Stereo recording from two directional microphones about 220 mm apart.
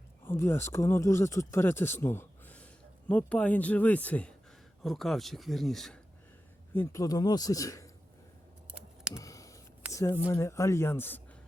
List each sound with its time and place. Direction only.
0.3 s speech: 10° left (ahead or behind)
6.7 s speech: 15° left (ahead or behind)
9.1 s a sound: 15° left (ahead or behind)
9.9 s speech: 15° left (ahead or behind)